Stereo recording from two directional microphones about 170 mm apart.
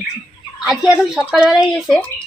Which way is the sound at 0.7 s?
5° right (ahead or behind).